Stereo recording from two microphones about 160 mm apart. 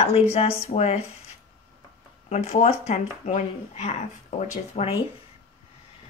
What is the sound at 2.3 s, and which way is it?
Speech, 45° left (ahead or behind).